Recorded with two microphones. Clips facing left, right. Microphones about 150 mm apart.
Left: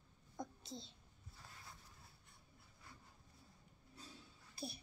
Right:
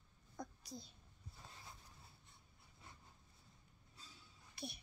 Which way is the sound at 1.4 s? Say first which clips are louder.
Right 1 dB; 20° right (ahead or behind).